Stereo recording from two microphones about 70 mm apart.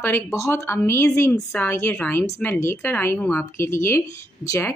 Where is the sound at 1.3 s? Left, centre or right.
Left.